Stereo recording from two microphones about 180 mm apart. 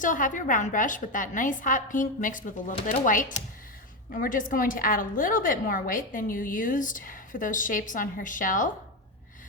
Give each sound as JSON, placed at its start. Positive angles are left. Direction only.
{"t": 0.0, "sound": "a woman's voice", "side_deg": 45}